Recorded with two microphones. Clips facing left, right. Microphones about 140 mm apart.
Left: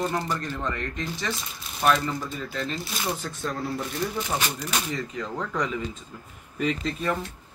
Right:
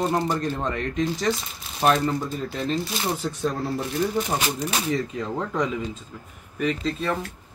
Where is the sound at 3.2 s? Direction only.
15° right (ahead or behind).